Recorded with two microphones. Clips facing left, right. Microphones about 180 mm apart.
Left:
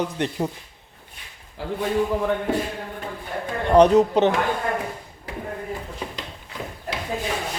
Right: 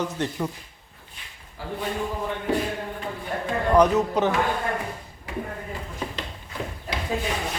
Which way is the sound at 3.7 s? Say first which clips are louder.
Left 5 dB; 30° left (ahead or behind).